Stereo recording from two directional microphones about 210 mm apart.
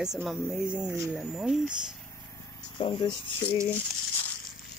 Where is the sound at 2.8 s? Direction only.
20° left (ahead or behind).